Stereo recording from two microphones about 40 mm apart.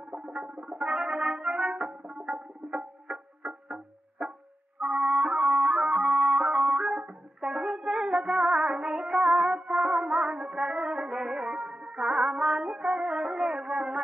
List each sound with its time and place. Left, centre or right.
0.1 s music: right